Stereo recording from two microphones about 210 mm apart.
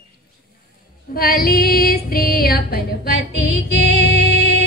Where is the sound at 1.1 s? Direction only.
45° left (ahead or behind).